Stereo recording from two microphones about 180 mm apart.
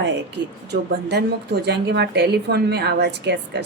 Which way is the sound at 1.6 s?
70° right (ahead or behind).